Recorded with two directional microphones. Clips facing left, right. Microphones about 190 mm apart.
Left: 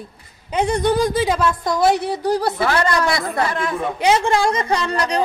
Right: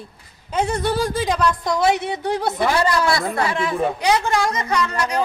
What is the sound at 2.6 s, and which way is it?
A woman's voice, 10° right (ahead or behind).